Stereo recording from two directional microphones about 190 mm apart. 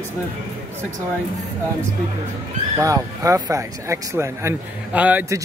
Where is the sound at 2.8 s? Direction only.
15° right (ahead or behind).